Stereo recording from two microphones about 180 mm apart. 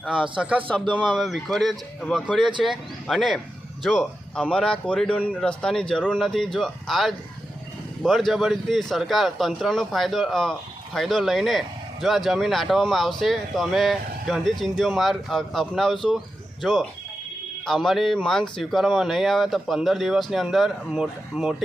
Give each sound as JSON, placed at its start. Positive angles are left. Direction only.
{"t": 0.0, "sound": "speech", "side_deg": -5}